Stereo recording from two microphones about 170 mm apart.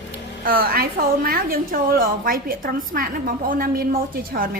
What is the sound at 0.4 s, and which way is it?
A woman's voice, 60° right (ahead or behind).